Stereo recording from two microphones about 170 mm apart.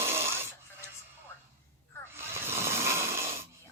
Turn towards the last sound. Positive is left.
turn(degrees=-15)  # may be behind; listen again after turning